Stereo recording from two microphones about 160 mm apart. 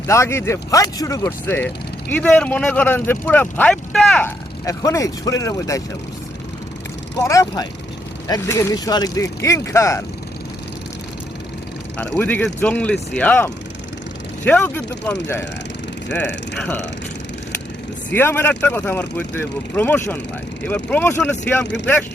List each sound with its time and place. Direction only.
0.1 s speech: 15° left (ahead or behind)
4.6 s speech: 20° left (ahead or behind)
7.2 s speech: 20° left (ahead or behind)
12.1 s speech: 10° left (ahead or behind)
16.6 s speech: 10° left (ahead or behind)
18.1 s speech: 15° left (ahead or behind)